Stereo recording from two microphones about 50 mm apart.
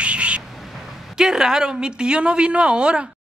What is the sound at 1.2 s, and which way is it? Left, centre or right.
A woman's voice, centre.